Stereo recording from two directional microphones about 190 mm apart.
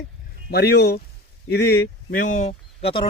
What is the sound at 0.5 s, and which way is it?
Speech, 60° left (ahead or behind).